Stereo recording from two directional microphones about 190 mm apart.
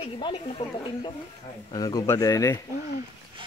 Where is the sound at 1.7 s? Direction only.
20° left (ahead or behind).